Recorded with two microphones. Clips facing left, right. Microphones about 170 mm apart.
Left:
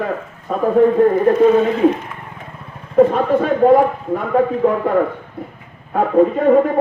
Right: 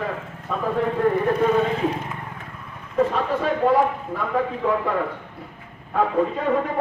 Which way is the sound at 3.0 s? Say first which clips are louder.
Left 8 dB; 50° left (ahead or behind).